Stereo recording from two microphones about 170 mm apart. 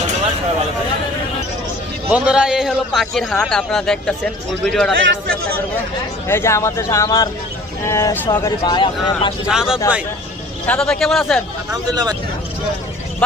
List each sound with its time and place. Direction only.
2.1 s a man's voice: 5° right (ahead or behind)
6.2 s a man's voice: 15° left (ahead or behind)
9.5 s a man's voice: 5° right (ahead or behind)
11.7 s speech: 25° right (ahead or behind)